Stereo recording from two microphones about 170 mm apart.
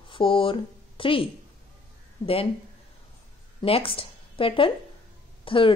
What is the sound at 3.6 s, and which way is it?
A woman's voice, 35° left (ahead or behind).